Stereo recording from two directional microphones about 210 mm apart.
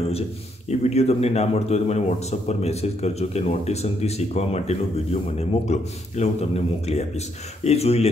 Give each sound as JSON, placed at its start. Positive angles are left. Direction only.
{"t": 0.7, "sound": "speech", "side_deg": 30}